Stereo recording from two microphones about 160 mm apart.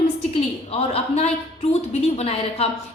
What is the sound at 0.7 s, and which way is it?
A woman's voice, 40° left (ahead or behind).